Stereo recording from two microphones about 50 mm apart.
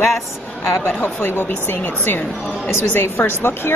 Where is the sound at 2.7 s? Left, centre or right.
Left.